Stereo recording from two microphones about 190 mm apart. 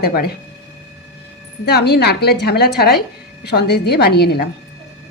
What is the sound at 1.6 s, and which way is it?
A woman's voice, 60° left (ahead or behind).